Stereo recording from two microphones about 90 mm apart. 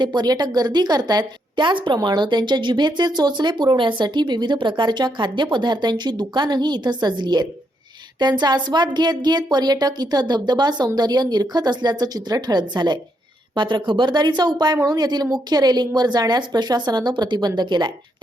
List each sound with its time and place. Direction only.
0.0 s a woman's voice: 55° right (ahead or behind)
1.5 s a woman's voice: 60° right (ahead or behind)